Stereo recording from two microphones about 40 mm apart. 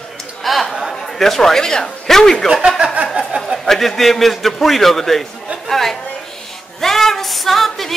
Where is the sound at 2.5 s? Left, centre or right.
Centre.